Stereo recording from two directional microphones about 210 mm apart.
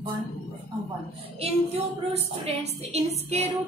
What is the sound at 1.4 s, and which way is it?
A woman's voice, 30° right (ahead or behind).